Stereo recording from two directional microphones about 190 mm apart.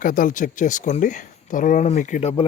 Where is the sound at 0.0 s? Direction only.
45° left (ahead or behind).